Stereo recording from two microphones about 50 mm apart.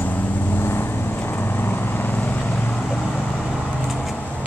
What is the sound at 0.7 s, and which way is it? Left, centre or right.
Vehicle, left.